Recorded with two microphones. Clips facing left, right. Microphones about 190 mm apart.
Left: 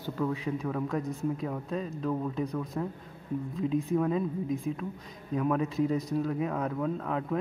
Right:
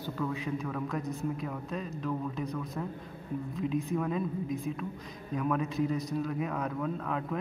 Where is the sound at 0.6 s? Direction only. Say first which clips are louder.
Left 3 dB; 25° left (ahead or behind).